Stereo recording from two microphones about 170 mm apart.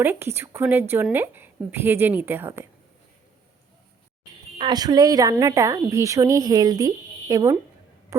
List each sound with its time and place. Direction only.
0.0 s a woman's voice: 15° right (ahead or behind)
4.5 s speech: 25° right (ahead or behind)